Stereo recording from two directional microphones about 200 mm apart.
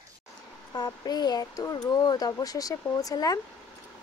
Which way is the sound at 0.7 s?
20° left (ahead or behind).